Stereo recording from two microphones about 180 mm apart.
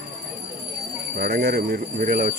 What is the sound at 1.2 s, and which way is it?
Speech, 55° right (ahead or behind).